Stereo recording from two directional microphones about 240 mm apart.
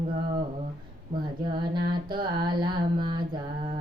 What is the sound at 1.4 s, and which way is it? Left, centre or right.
Music, centre.